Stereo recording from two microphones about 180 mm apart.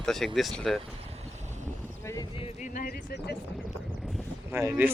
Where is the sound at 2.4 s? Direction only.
45° left (ahead or behind).